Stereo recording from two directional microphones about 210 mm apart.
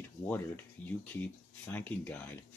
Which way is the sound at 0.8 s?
5° left (ahead or behind).